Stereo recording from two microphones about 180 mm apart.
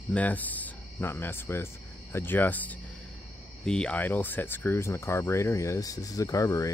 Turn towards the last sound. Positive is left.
turn(degrees=20)  # may be behind; listen again after turning